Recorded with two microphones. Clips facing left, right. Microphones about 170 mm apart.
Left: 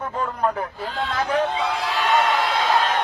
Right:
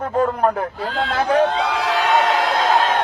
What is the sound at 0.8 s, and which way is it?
Speech, 85° right.